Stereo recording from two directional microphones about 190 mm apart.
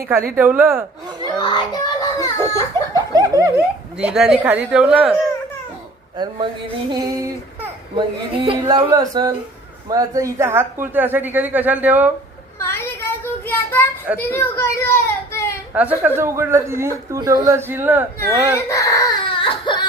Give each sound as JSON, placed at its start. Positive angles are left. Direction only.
{"t": 0.3, "sound": "speech", "side_deg": -10}
{"t": 1.4, "sound": "a child's voice", "side_deg": 25}
{"t": 3.1, "sound": "speech", "side_deg": -20}
{"t": 3.9, "sound": "speech", "side_deg": -5}
{"t": 6.1, "sound": "speech", "side_deg": -25}
{"t": 13.4, "sound": "child singing", "side_deg": 10}
{"t": 14.2, "sound": "a child's voice", "side_deg": 10}
{"t": 15.7, "sound": "speech", "side_deg": -10}
{"t": 18.5, "sound": "baby cry", "side_deg": 15}